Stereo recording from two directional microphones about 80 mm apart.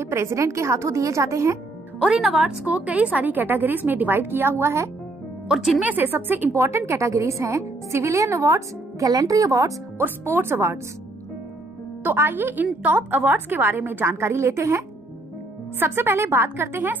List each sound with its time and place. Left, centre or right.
0.0 s a woman's voice: right
2.0 s a woman's voice: centre; by 4.9 s right
5.5 s speech: centre
5.9 s a woman's voice: right
9.9 s a woman's voice: right
12.0 s a woman's voice: right